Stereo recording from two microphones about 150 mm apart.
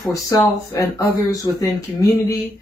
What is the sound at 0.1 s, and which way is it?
Speech, 25° left (ahead or behind).